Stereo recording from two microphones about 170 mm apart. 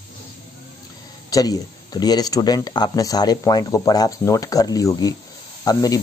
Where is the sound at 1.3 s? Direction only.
20° left (ahead or behind).